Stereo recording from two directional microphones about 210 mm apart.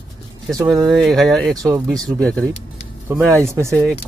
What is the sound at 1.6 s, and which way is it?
Speech, 15° right (ahead or behind).